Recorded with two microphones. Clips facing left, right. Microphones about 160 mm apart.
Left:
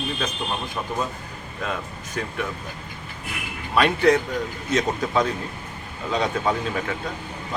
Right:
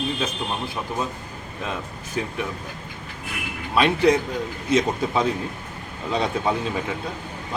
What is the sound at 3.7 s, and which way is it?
Speech, centre (ahead or behind).